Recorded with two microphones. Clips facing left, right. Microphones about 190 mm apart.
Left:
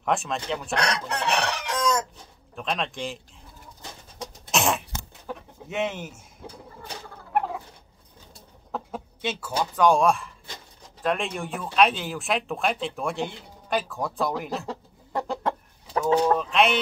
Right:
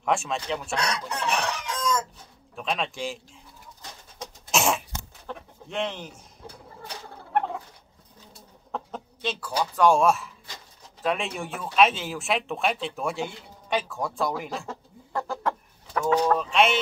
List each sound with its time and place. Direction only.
0.0 s speech: centre (ahead or behind)
0.7 s chicken: 70° left (ahead or behind)
2.5 s speech: centre (ahead or behind)
4.5 s cough: centre (ahead or behind)
5.2 s chicken: 5° left (ahead or behind)
7.3 s fowl: 5° left (ahead or behind)
8.7 s chicken: 5° left (ahead or behind)
9.6 s speech: centre (ahead or behind)
14.7 s chicken: 15° left (ahead or behind)
16.3 s speech: centre (ahead or behind)